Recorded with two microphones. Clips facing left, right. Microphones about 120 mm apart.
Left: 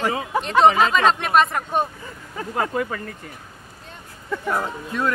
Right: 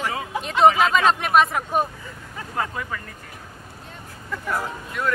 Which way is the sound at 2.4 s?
35° left (ahead or behind).